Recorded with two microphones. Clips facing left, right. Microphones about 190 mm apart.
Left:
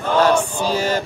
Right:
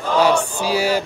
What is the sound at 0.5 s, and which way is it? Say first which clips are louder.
Speech: right 1 dB; 10° right (ahead or behind).